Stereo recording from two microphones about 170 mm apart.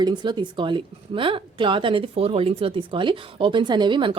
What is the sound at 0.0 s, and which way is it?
A woman's voice, 25° right (ahead or behind).